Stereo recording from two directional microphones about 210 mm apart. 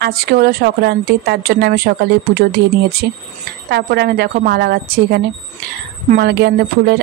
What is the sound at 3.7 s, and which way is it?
Speech, 50° right (ahead or behind).